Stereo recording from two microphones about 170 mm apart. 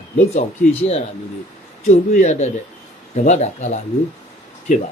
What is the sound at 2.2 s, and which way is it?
Speech, 45° left (ahead or behind).